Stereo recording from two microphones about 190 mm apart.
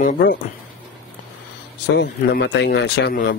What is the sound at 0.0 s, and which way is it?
Speech, 55° left (ahead or behind).